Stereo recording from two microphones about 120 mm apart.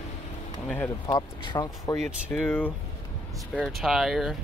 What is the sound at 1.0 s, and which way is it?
Speech, 35° left (ahead or behind).